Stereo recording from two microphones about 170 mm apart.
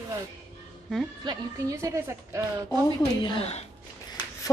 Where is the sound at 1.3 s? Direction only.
20° right (ahead or behind).